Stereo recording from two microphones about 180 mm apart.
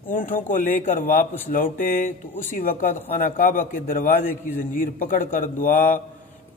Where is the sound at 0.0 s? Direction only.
50° left (ahead or behind).